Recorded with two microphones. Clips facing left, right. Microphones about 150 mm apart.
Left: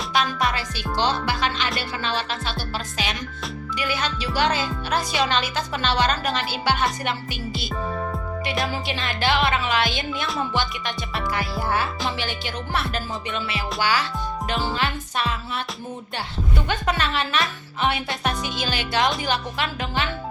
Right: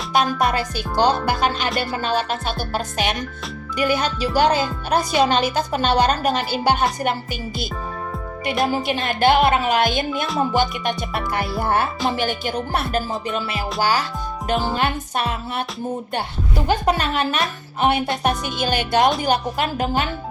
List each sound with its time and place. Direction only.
0.1 s music: 45° right (ahead or behind)
8.6 s music: 45° right (ahead or behind)